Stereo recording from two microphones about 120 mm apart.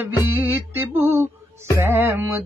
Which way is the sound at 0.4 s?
15° right (ahead or behind).